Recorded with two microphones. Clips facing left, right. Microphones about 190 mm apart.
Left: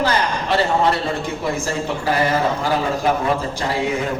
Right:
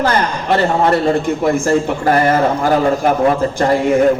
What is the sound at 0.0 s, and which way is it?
A man's voice, 50° right (ahead or behind).